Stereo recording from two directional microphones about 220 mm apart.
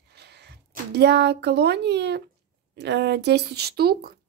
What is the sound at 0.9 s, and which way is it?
Speech, 50° right (ahead or behind).